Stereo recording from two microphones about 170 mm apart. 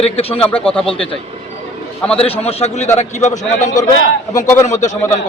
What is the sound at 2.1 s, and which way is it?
A man's voice, 35° left (ahead or behind).